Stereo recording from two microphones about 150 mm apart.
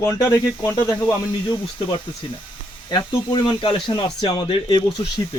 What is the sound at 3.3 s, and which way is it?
Speech, 35° left (ahead or behind).